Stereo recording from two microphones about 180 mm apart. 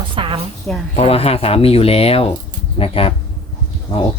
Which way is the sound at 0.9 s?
35° left (ahead or behind).